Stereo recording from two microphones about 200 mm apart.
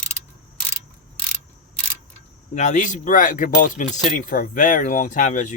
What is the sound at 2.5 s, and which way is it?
Speech, 35° left (ahead or behind).